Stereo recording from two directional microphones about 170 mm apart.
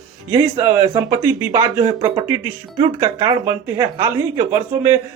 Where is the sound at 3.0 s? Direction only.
15° right (ahead or behind).